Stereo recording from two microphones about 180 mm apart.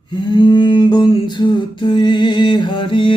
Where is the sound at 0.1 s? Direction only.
25° left (ahead or behind).